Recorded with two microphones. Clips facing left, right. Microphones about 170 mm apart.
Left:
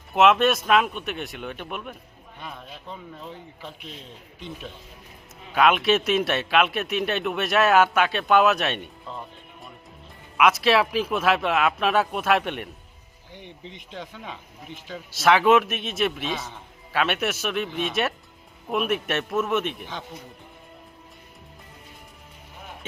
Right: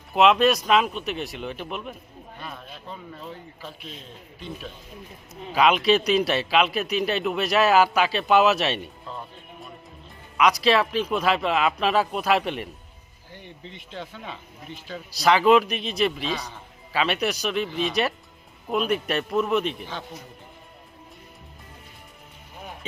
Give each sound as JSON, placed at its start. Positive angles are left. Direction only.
{"t": 0.1, "sound": "a man's voice", "side_deg": 0}
{"t": 3.2, "sound": "speech", "side_deg": 20}
{"t": 5.3, "sound": "a man's voice", "side_deg": 0}
{"t": 10.3, "sound": "a man's voice", "side_deg": 5}
{"t": 13.7, "sound": "speech", "side_deg": 15}
{"t": 14.8, "sound": "a man's voice", "side_deg": 0}